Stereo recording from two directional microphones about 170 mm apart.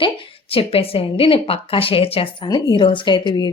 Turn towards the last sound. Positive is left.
turn(degrees=25)  # may be behind; listen again after turning